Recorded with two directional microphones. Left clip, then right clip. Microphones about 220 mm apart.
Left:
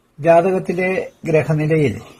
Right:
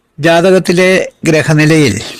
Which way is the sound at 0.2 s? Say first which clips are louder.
Right 5 dB; 35° right (ahead or behind).